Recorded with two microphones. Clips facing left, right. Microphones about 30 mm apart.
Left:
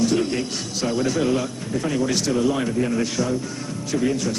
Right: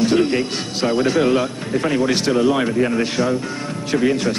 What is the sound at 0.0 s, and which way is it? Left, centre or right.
A woman's voice, right.